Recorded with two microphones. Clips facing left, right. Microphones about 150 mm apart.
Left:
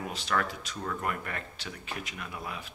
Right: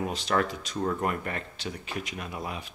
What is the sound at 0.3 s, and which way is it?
Speech, 30° right (ahead or behind).